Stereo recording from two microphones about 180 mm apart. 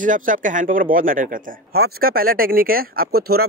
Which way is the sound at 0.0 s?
45° right (ahead or behind).